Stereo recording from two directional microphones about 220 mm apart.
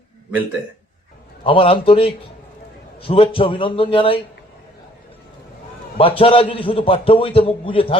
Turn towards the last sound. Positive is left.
turn(degrees=25)  # may be behind; listen again after turning